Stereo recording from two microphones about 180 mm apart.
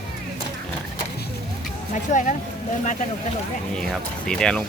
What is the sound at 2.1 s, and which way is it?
Speech, 40° left (ahead or behind).